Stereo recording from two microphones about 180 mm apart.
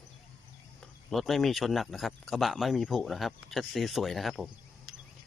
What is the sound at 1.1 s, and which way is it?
Speech, centre (ahead or behind).